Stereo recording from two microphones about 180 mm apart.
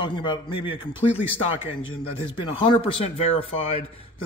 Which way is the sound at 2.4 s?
25° left (ahead or behind).